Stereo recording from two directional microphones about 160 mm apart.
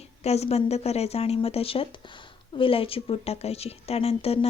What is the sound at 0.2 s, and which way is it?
A woman's voice, 40° left (ahead or behind).